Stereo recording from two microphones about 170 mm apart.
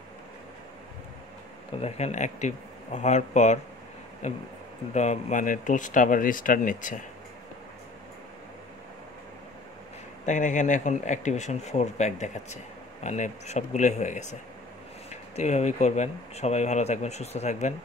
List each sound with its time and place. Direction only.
1.8 s speech: 40° left (ahead or behind)
4.9 s speech: 45° left (ahead or behind)
10.2 s speech: 45° left (ahead or behind)